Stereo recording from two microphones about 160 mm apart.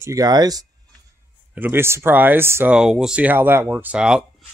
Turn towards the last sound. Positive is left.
turn(degrees=-5)  # may be behind; listen again after turning